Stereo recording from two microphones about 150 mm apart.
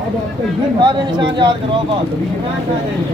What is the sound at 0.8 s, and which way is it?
Speech, 30° right (ahead or behind).